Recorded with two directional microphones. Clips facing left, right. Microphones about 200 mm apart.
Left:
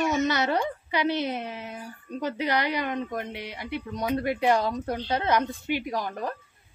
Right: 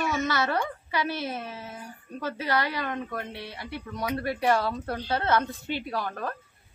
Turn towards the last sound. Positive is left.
turn(degrees=15)  # may be behind; listen again after turning